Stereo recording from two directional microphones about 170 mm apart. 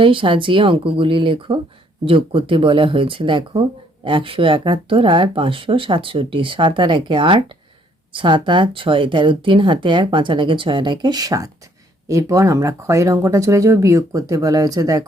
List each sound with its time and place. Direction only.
0.0 s speech: 30° right (ahead or behind)